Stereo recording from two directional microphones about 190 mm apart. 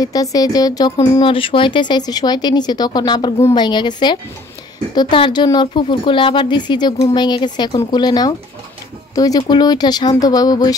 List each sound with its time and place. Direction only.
0.0 s a woman's voice: 20° left (ahead or behind)